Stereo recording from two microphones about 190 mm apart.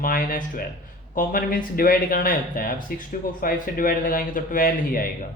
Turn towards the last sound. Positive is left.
turn(degrees=45)  # may be behind; listen again after turning